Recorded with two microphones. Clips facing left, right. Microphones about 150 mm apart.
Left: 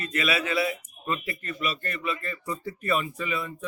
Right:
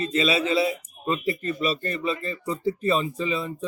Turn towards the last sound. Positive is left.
turn(degrees=-25)  # may be behind; listen again after turning